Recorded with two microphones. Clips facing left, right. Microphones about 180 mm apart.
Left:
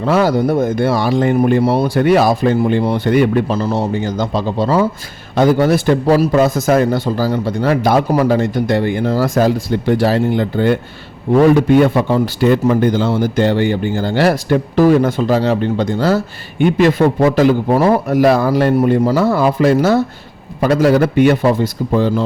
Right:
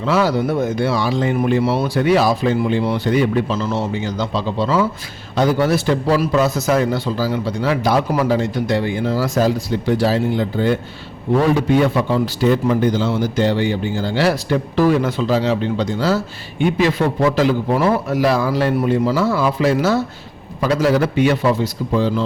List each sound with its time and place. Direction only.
0.0 s speech: 50° left (ahead or behind)
3.7 s speech: 45° left (ahead or behind)